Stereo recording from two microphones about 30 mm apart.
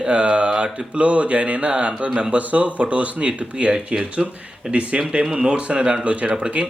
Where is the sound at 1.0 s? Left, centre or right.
Right.